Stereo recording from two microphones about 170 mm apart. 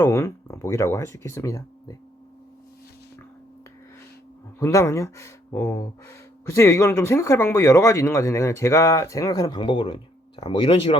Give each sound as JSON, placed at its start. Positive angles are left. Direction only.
{"t": 0.0, "sound": "speech", "side_deg": 20}
{"t": 4.6, "sound": "speech", "side_deg": 15}